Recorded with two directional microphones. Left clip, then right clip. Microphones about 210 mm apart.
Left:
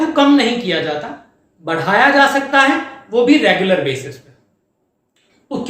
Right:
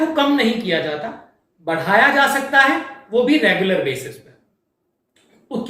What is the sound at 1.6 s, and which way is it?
Speech, 15° left (ahead or behind).